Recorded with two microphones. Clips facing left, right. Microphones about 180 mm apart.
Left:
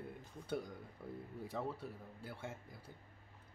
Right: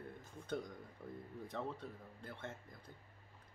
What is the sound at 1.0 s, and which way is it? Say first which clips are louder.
Speech: left 2 dB; 5° left (ahead or behind).